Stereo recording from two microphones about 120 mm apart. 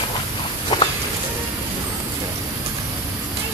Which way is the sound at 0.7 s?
35° left (ahead or behind).